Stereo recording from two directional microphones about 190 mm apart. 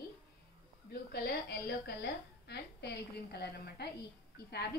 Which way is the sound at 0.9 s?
55° left (ahead or behind).